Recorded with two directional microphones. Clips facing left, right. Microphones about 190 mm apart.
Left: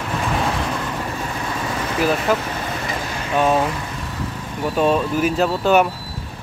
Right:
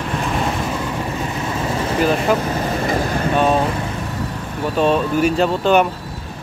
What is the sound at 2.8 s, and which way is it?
Vehicle, 50° right (ahead or behind).